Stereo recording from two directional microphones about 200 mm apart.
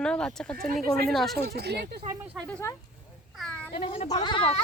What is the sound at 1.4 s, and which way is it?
Speech, 55° right (ahead or behind).